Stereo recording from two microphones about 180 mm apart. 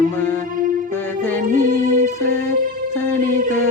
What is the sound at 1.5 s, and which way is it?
Music, 45° right (ahead or behind).